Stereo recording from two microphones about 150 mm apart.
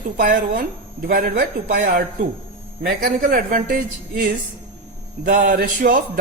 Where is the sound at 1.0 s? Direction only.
65° right (ahead or behind).